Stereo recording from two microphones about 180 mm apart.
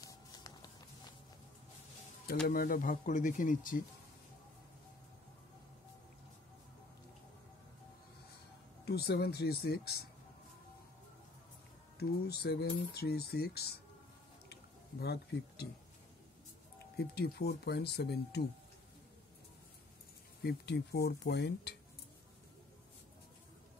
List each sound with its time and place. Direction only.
0.0 s music: 20° left (ahead or behind)
2.4 s speech: 55° left (ahead or behind)
8.8 s speech: 60° left (ahead or behind)
12.0 s speech: 60° left (ahead or behind)
14.5 s a sound: 60° left (ahead or behind)
16.9 s speech: 60° left (ahead or behind)
20.4 s speech: 65° left (ahead or behind)